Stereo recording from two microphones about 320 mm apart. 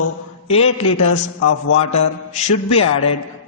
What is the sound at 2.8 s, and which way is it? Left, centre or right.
Speech, left.